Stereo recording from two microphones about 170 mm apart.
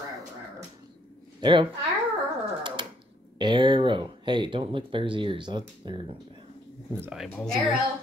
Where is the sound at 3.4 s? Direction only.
25° right (ahead or behind).